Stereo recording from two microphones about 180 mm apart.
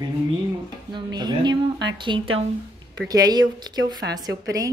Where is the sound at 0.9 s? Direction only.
25° right (ahead or behind).